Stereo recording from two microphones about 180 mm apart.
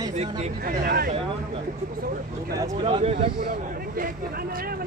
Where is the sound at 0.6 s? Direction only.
55° right (ahead or behind).